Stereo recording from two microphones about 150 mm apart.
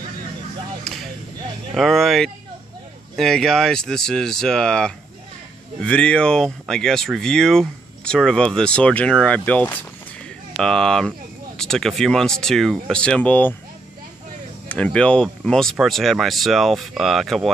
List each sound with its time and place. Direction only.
1.8 s speech: centre (ahead or behind)
14.7 s speech: 5° left (ahead or behind)